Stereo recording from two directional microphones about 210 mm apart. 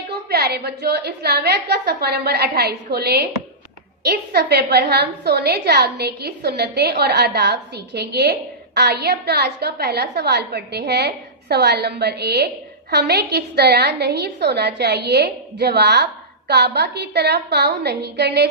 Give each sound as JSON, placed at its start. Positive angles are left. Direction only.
{"t": 0.1, "sound": "a woman's voice", "side_deg": -50}